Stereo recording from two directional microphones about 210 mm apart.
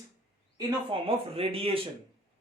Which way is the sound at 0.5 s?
25° right (ahead or behind).